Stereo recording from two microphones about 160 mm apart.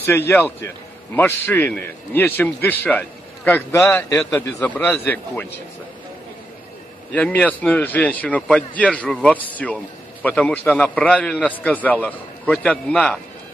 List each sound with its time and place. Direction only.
0.0 s a man's voice: 15° left (ahead or behind)
7.1 s a man's voice: 10° left (ahead or behind)